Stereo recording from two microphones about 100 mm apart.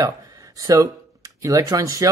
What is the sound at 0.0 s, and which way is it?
Speech, 35° right (ahead or behind).